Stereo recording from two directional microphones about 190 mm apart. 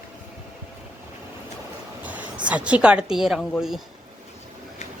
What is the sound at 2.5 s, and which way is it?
Speech, 5° right (ahead or behind).